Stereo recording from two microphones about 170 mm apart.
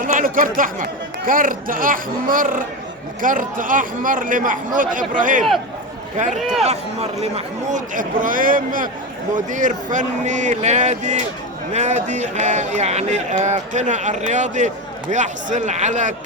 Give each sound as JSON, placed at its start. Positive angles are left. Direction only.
{"t": 0.0, "sound": "speech", "side_deg": -50}